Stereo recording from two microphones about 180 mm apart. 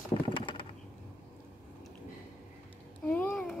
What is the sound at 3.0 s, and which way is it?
Babbling, 10° left (ahead or behind).